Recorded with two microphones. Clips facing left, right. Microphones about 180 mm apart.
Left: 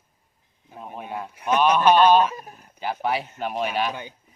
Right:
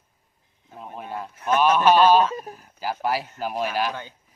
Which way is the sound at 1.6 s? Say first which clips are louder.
Even; 5° right (ahead or behind).